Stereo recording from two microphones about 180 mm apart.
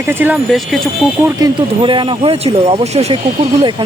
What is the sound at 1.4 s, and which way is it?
Speech, 25° right (ahead or behind).